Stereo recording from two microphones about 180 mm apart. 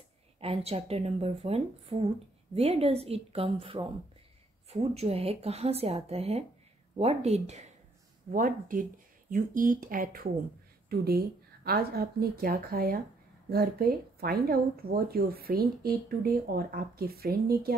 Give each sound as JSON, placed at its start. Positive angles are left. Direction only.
{"t": 0.4, "sound": "a woman's voice", "side_deg": -35}
{"t": 8.3, "sound": "speech", "side_deg": -50}